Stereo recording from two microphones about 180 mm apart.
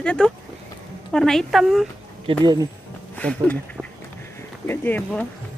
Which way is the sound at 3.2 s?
5° left (ahead or behind).